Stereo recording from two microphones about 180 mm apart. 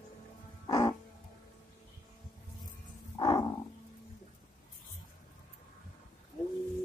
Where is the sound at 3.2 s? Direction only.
20° left (ahead or behind).